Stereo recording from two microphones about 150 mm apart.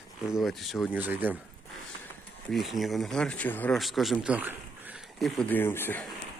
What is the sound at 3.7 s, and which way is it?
Speech, centre (ahead or behind).